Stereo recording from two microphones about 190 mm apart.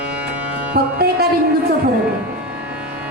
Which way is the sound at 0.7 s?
55° right (ahead or behind).